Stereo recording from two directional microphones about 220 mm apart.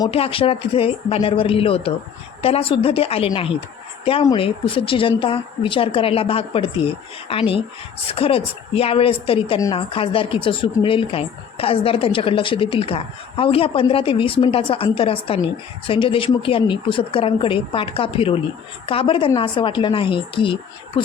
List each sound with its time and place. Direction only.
0.0 s a woman's voice: 25° left (ahead or behind)